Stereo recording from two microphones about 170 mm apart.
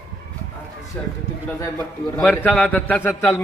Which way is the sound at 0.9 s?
10° left (ahead or behind).